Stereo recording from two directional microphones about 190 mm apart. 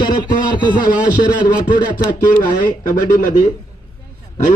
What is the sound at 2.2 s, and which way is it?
Speech, 45° left (ahead or behind).